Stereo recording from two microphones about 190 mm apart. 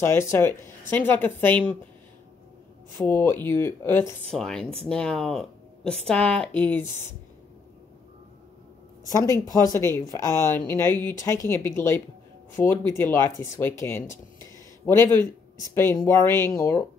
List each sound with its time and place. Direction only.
0.0 s speech: 15° left (ahead or behind)
3.1 s speech: 10° left (ahead or behind)
9.0 s speech: 15° left (ahead or behind)